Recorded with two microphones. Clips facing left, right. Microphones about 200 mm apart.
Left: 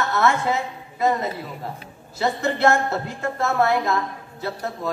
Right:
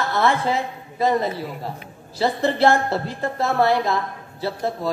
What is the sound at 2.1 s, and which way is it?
Speech, 35° right (ahead or behind).